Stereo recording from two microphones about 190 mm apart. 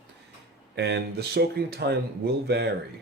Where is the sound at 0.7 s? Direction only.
60° right (ahead or behind).